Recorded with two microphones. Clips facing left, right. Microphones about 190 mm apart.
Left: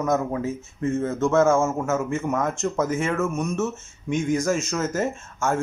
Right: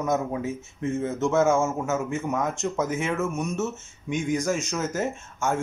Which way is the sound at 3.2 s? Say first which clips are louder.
Left 3 dB; 25° right (ahead or behind).